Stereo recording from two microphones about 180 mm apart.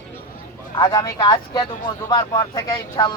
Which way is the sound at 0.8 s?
25° left (ahead or behind).